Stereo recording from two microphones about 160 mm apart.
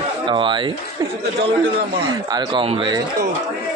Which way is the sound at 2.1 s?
25° right (ahead or behind).